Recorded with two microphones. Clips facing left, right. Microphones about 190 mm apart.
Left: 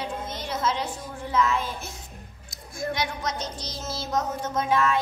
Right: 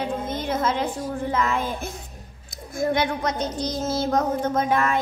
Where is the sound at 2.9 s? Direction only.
55° right (ahead or behind).